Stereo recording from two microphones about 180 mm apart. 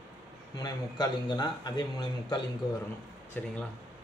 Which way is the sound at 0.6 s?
25° left (ahead or behind).